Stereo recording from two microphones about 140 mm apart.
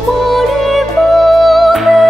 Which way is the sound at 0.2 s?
Centre (ahead or behind).